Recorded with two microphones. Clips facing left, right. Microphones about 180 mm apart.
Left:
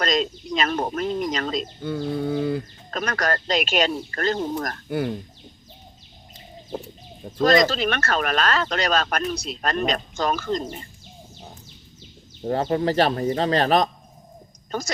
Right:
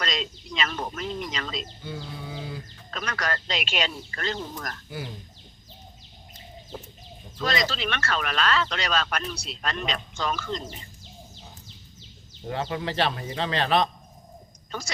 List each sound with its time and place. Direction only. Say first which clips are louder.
0.0 s speech: left 8 dB; 45° left (ahead or behind)
7.3 s speech: left 10 dB; 45° left (ahead or behind)
12.5 s a woman's voice: left 8 dB; 40° left (ahead or behind)